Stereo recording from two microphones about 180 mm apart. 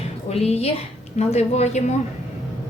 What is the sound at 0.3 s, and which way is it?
A woman's voice, 35° left (ahead or behind).